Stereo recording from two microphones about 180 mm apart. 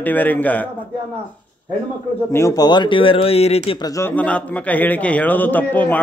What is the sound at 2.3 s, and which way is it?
Speech, 20° left (ahead or behind).